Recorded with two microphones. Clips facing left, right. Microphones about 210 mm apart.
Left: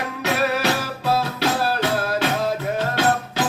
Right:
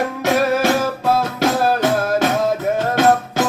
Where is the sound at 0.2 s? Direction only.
45° right (ahead or behind).